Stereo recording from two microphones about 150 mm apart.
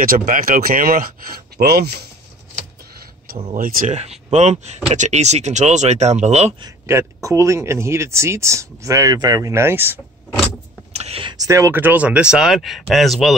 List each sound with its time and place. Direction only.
0.0 s speech: 70° right (ahead or behind); by 2.0 s 90° right
3.5 s speech: 60° right (ahead or behind)
6.9 s speech: 20° right (ahead or behind)
10.9 s a sound: 45° right (ahead or behind)
11.4 s speech: 20° right (ahead or behind); by 13.4 s centre (ahead or behind)